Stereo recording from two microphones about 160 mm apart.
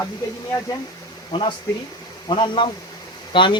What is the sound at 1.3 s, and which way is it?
Speech, 35° left (ahead or behind).